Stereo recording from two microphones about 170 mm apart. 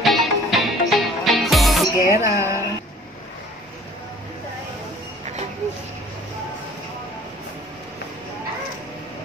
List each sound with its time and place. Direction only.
0.0 s music: centre (ahead or behind)
2.0 s music: 15° right (ahead or behind)